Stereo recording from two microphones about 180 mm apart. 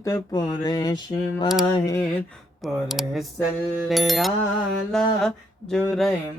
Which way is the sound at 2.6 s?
Centre (ahead or behind).